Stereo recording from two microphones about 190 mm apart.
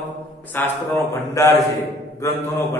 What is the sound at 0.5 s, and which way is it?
A man's voice, 10° left (ahead or behind).